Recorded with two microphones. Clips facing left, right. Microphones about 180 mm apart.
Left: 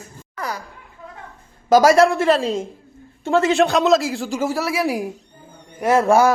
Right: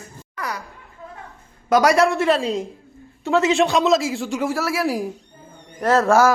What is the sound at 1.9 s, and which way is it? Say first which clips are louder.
Speech: left 2 dB; centre (ahead or behind).